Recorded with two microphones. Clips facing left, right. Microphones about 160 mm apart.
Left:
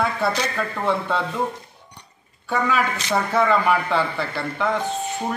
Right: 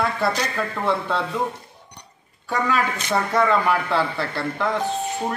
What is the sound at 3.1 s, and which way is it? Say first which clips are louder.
A man's voice: even; centre (ahead or behind).